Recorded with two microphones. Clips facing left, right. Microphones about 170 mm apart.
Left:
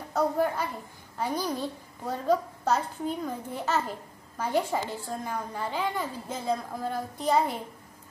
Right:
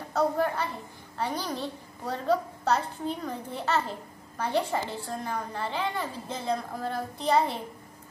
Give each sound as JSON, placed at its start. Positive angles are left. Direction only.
{"t": 0.1, "sound": "a child's voice", "side_deg": 10}